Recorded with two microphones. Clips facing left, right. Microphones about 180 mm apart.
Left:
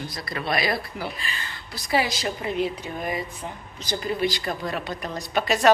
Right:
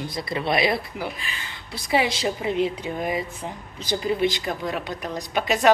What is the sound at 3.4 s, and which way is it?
A woman's voice, 25° right (ahead or behind).